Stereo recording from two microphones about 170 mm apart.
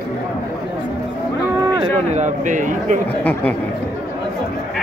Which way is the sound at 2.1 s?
45° right (ahead or behind).